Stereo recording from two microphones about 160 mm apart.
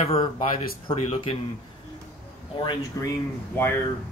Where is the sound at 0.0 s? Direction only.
40° left (ahead or behind).